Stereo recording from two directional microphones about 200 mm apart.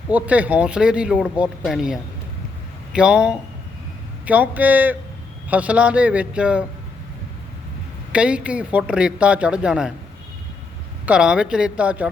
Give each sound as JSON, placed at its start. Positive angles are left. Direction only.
{"t": 0.1, "sound": "speech", "side_deg": -5}
{"t": 8.1, "sound": "speech", "side_deg": -5}
{"t": 11.0, "sound": "speech", "side_deg": -5}